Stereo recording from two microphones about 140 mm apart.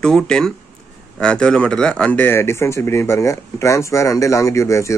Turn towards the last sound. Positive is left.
turn(degrees=20)  # may be behind; listen again after turning